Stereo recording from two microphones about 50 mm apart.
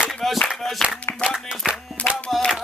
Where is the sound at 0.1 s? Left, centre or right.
Centre.